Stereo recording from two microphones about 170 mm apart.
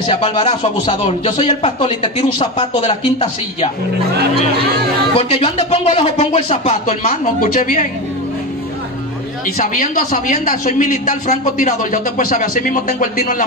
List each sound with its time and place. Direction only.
0.0 s speech: 30° left (ahead or behind)
5.1 s speech: 35° left (ahead or behind)
9.6 s speech: 50° left (ahead or behind)